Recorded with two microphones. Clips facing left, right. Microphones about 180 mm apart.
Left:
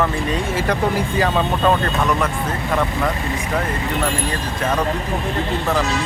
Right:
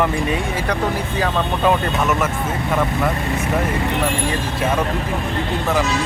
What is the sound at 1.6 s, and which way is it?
Speech, 5° right (ahead or behind).